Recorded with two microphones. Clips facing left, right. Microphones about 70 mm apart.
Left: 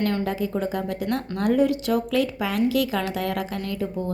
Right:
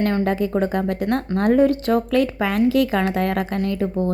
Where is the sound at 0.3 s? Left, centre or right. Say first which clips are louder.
Right 5 dB; right.